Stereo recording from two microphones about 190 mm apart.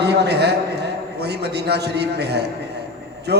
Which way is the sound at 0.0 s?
60° right (ahead or behind).